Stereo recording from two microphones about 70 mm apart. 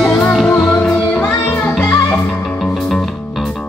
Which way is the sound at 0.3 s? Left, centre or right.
Centre.